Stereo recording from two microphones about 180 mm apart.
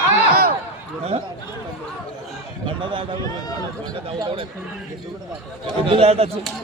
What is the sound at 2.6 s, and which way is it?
Speech, 25° right (ahead or behind).